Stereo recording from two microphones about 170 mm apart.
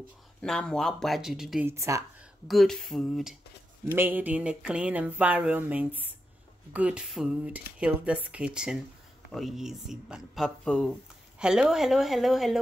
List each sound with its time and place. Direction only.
0.4 s speech: 5° left (ahead or behind)
1.7 s speech: 15° right (ahead or behind)
2.4 s speech: centre (ahead or behind)
3.9 s speech: 10° right (ahead or behind)